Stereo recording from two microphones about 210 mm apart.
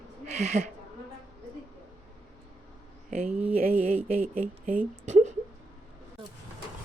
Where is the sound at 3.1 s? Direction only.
30° right (ahead or behind).